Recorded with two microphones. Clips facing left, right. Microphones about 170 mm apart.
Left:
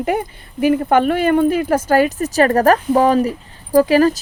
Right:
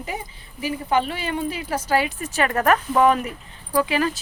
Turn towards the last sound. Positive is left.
turn(degrees=40)  # may be behind; listen again after turning